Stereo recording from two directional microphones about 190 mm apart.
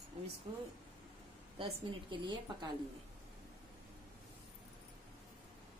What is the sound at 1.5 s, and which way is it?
A woman's voice, 25° right (ahead or behind).